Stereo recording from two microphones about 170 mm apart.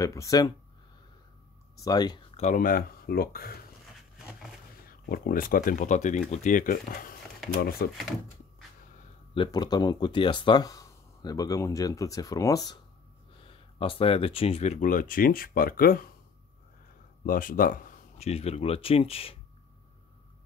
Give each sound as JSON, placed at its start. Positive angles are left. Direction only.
{"t": 0.0, "sound": "speech", "side_deg": 20}
{"t": 1.9, "sound": "speech", "side_deg": 25}
{"t": 2.3, "sound": "speech", "side_deg": 45}
{"t": 5.1, "sound": "speech", "side_deg": 60}
{"t": 9.3, "sound": "speech", "side_deg": 25}
{"t": 13.4, "sound": "speech", "side_deg": 30}
{"t": 17.2, "sound": "speech", "side_deg": 55}
{"t": 18.1, "sound": "speech", "side_deg": 35}